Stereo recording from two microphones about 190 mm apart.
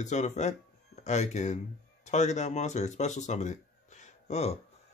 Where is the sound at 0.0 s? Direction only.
40° left (ahead or behind).